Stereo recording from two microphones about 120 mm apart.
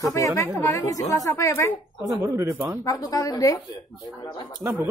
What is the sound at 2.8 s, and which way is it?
Speech, 30° left (ahead or behind).